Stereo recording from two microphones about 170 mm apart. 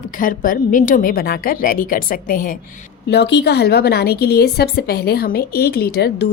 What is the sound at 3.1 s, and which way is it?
A woman's voice, 85° left.